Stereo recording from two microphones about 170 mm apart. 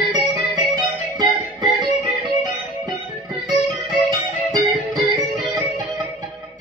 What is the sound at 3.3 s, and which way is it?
Music, 25° right (ahead or behind).